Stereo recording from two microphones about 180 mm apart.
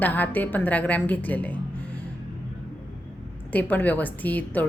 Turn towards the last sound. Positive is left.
turn(degrees=10)  # may be behind; listen again after turning